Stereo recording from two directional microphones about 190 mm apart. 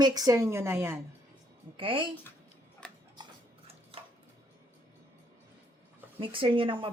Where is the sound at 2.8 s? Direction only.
5° left (ahead or behind).